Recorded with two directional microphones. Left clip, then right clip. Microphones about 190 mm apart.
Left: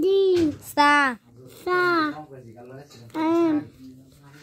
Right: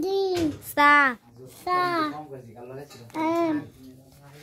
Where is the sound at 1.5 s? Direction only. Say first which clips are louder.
Left 3 dB; 10° right (ahead or behind).